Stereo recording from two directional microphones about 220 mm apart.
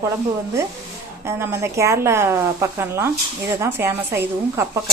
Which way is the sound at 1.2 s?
10° right (ahead or behind).